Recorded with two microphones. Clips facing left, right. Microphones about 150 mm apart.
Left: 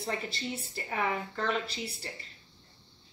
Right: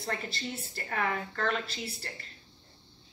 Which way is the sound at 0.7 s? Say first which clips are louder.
Even; 10° left (ahead or behind).